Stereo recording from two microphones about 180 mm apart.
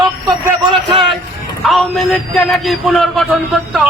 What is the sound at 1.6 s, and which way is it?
A man's voice, centre (ahead or behind).